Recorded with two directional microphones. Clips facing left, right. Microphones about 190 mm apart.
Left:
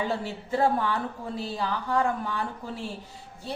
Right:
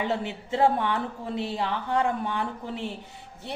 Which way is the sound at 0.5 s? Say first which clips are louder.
Right 1 dB; 20° right (ahead or behind).